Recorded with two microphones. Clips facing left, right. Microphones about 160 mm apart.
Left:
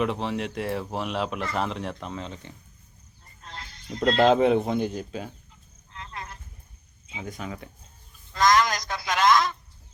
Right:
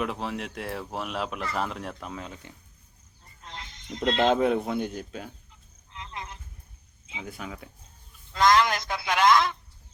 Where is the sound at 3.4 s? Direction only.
20° right (ahead or behind).